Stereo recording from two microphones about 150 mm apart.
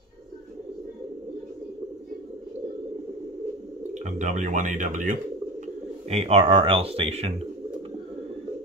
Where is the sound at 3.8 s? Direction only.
55° right (ahead or behind).